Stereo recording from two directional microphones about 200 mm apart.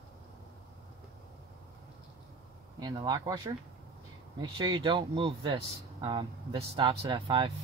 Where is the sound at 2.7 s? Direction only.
20° right (ahead or behind).